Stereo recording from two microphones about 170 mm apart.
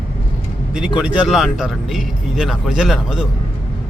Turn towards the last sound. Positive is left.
turn(degrees=-5)  # may be behind; listen again after turning